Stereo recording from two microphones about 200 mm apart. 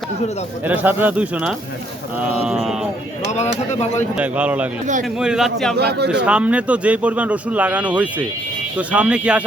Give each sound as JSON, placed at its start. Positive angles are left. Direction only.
{"t": 0.6, "sound": "a man's voice", "side_deg": -10}
{"t": 4.1, "sound": "a man's voice", "side_deg": -5}
{"t": 5.7, "sound": "a man's voice", "side_deg": -55}
{"t": 6.2, "sound": "a man's voice", "side_deg": -5}